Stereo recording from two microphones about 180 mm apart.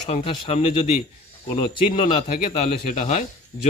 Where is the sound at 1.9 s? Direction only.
35° left (ahead or behind).